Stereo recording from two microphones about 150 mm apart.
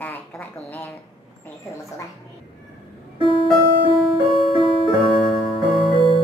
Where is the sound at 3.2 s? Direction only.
Centre (ahead or behind).